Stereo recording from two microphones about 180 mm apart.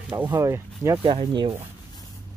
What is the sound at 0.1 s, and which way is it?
Speech, 25° right (ahead or behind).